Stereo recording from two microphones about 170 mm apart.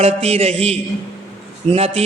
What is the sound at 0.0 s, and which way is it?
Mantra, 35° right (ahead or behind).